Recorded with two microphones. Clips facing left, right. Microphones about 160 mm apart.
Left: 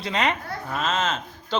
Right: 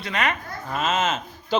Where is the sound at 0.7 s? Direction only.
5° right (ahead or behind).